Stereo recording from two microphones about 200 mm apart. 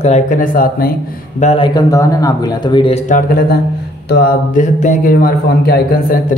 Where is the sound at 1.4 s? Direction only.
35° left (ahead or behind).